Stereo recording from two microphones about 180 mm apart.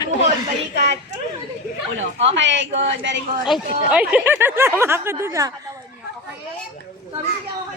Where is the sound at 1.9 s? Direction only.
90° right.